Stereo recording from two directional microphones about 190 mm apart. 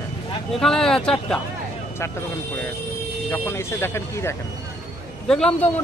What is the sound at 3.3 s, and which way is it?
Speech, 10° left (ahead or behind).